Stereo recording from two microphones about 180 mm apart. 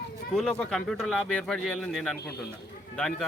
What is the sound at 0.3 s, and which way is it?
Speech, 5° left (ahead or behind).